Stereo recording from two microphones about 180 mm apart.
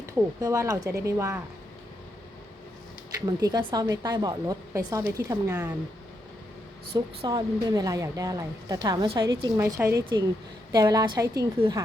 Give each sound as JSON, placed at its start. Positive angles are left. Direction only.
{"t": 0.0, "sound": "speech", "side_deg": -20}
{"t": 3.2, "sound": "a woman's voice", "side_deg": -20}
{"t": 6.9, "sound": "a woman's voice", "side_deg": -25}